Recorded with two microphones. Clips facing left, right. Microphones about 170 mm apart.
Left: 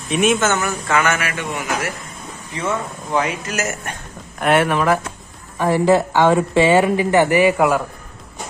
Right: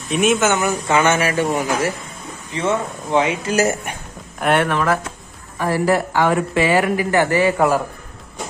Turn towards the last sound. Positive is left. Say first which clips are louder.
# left 2 dB
turn(degrees=15)  # may be behind; listen again after turning